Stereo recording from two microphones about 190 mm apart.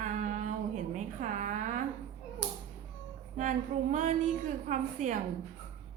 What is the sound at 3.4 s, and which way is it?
A woman's voice, 40° right (ahead or behind).